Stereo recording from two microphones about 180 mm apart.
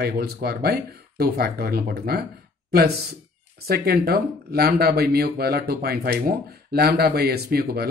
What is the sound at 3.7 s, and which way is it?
Speech, 60° right (ahead or behind).